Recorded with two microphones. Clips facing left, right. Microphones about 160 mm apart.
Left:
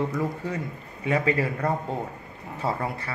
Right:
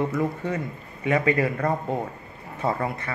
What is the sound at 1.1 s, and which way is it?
Speech, 30° left (ahead or behind).